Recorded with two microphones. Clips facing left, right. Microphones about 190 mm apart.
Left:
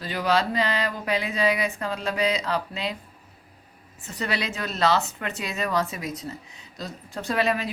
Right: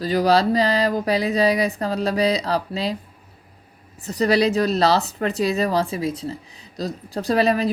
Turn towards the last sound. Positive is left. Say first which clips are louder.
# right 6 dB
turn(degrees=-35)  # may be behind; listen again after turning